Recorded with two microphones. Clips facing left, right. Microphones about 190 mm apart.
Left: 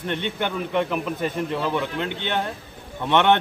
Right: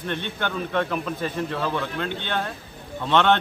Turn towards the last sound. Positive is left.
turn(degrees=15)  # may be behind; listen again after turning